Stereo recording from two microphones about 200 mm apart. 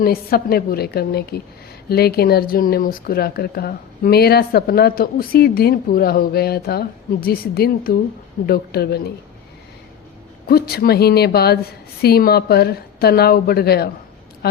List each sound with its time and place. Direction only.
0.0 s speech: 50° left (ahead or behind)
10.5 s speech: 50° left (ahead or behind)